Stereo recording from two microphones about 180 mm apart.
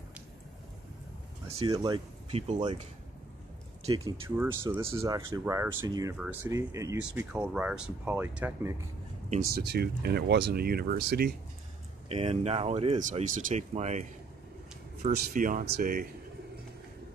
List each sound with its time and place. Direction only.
1.6 s speech: 20° right (ahead or behind)
2.3 s speech: 35° right (ahead or behind)
4.0 s speech: 15° right (ahead or behind)
6.1 s speech: 5° right (ahead or behind)
6.5 s speech: 15° right (ahead or behind)
7.0 s speech: 5° right (ahead or behind)
9.4 s speech: 60° right (ahead or behind)
12.1 s speech: 35° right (ahead or behind)
15.0 s speech: 50° right (ahead or behind)